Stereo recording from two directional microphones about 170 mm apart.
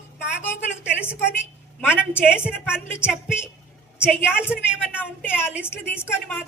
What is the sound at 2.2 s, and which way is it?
A woman's voice, 5° right (ahead or behind).